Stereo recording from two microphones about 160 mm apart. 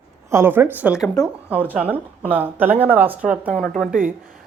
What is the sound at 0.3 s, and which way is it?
Speech, 15° right (ahead or behind).